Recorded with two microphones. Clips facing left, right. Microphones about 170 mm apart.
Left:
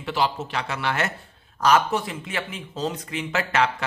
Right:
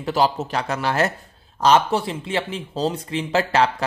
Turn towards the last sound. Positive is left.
turn(degrees=-35)  # may be behind; listen again after turning